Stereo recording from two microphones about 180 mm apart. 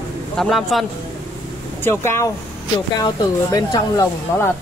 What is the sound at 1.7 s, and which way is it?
Speech, 15° left (ahead or behind).